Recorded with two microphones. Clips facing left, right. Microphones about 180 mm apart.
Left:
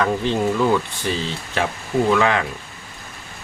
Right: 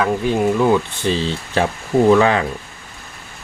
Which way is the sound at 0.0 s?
15° right (ahead or behind).